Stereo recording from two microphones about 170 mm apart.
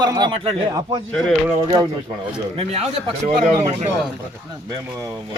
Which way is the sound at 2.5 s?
35° right (ahead or behind).